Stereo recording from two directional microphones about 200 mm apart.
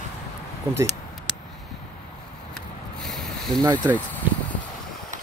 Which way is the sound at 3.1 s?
Centre (ahead or behind).